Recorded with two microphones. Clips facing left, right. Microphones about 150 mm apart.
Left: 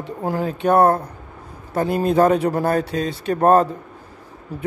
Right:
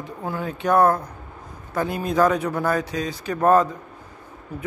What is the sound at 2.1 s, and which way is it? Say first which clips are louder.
A man's voice: left 2 dB; 30° left (ahead or behind).